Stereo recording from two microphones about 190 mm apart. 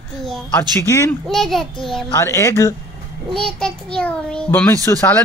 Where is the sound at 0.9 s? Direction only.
15° left (ahead or behind).